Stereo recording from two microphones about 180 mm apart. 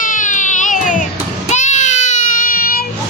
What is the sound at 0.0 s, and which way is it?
Baby cry, 45° left (ahead or behind).